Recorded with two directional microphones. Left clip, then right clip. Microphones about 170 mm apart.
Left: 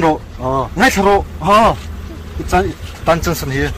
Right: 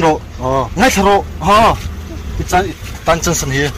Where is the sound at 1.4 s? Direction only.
15° left (ahead or behind).